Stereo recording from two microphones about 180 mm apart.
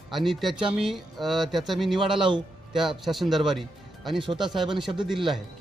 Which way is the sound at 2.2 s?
25° right (ahead or behind).